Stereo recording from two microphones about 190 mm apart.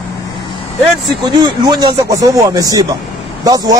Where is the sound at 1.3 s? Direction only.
20° right (ahead or behind).